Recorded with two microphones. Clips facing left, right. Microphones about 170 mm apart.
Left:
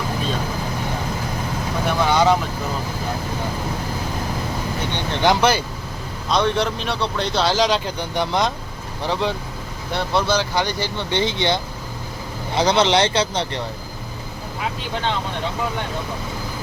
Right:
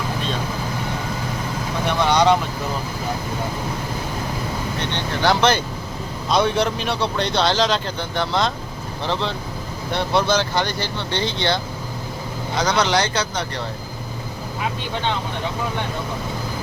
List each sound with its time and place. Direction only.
1.8 s vehicle: 5° left (ahead or behind)
5.1 s speech: 15° left (ahead or behind)
6.3 s speech: 5° right (ahead or behind); by 8.5 s 15° left (ahead or behind)
9.9 s speech: 5° left (ahead or behind); by 13.6 s 25° left (ahead or behind)